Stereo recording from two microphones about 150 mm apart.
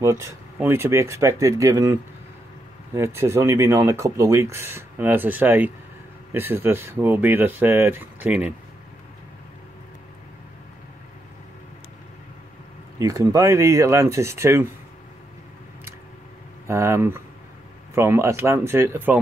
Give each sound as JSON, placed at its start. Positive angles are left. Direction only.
{"t": 0.0, "sound": "speech", "side_deg": -20}
{"t": 13.0, "sound": "speech", "side_deg": -20}
{"t": 16.6, "sound": "speech", "side_deg": -20}